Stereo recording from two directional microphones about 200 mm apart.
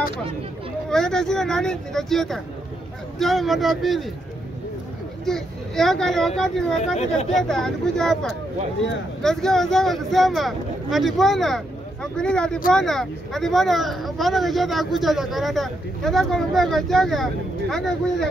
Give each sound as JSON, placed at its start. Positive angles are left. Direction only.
{"t": 0.8, "sound": "speech", "side_deg": 5}
{"t": 5.2, "sound": "speech", "side_deg": 0}